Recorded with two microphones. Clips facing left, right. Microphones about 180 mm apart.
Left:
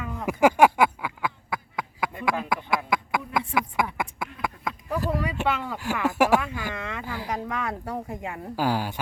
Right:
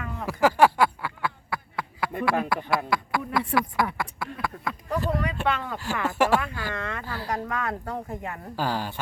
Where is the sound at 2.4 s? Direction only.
55° right (ahead or behind).